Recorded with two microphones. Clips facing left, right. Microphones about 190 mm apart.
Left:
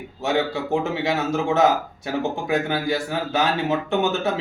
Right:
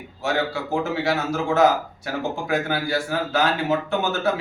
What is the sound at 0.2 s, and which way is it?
A man's voice, 20° left (ahead or behind).